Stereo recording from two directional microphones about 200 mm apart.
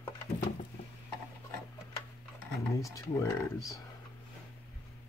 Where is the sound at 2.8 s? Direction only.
15° left (ahead or behind).